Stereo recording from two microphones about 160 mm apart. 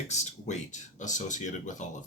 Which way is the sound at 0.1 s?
45° left (ahead or behind).